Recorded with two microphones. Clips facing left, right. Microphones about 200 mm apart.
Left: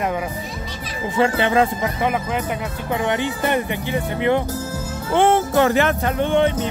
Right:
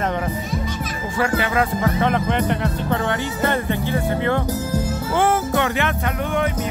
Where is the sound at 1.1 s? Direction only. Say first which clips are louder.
Left 3 dB; 25° left (ahead or behind).